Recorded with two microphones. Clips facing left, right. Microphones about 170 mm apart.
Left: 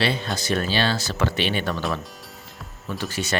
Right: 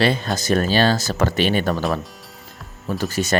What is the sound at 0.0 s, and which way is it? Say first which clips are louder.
Speech: right 5 dB; 45° right (ahead or behind).